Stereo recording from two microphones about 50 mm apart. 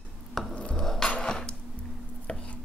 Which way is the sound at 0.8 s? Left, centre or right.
Centre.